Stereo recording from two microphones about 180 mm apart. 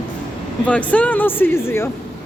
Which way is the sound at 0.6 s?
5° left (ahead or behind).